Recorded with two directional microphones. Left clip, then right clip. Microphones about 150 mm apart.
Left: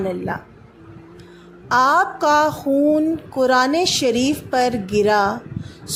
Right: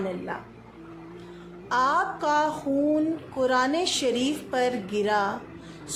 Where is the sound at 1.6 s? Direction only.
45° left (ahead or behind).